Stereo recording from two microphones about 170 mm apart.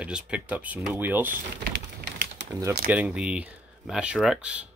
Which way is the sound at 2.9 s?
5° right (ahead or behind).